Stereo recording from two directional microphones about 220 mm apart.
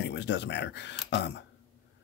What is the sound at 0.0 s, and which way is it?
Speech, 50° left (ahead or behind).